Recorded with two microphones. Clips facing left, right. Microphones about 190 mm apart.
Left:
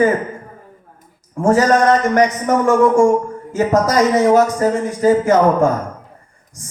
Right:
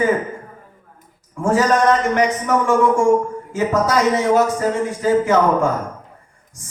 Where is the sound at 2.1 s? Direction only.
40° left (ahead or behind).